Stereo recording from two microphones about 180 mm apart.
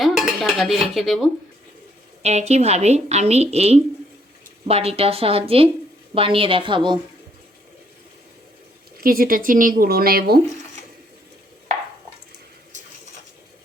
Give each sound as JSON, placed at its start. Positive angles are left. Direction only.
{"t": 0.0, "sound": "dishes", "side_deg": 0}
{"t": 2.2, "sound": "a woman's voice", "side_deg": -35}
{"t": 9.0, "sound": "a woman's voice", "side_deg": -55}